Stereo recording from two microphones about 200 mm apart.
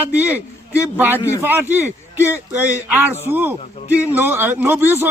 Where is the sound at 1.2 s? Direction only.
15° left (ahead or behind).